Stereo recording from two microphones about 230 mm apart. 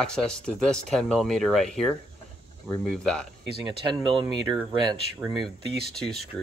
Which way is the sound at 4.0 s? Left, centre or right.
Centre.